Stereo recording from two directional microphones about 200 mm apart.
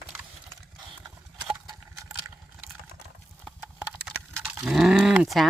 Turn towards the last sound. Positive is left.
turn(degrees=-5)  # may be behind; listen again after turning